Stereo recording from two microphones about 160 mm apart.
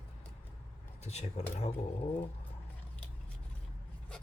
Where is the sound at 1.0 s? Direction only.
40° left (ahead or behind).